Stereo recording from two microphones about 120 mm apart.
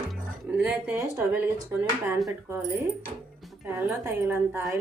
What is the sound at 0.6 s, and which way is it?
Speech, 10° right (ahead or behind).